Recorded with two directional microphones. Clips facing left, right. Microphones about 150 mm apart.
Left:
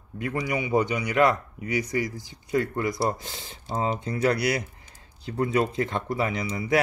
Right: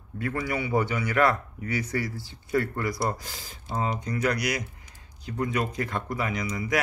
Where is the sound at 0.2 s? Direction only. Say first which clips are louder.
Left 1 dB; 15° left (ahead or behind).